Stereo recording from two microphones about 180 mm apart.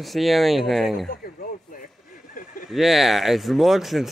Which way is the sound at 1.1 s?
55° left (ahead or behind).